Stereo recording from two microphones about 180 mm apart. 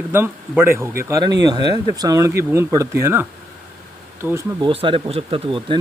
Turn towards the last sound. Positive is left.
turn(degrees=-30)  # may be behind; listen again after turning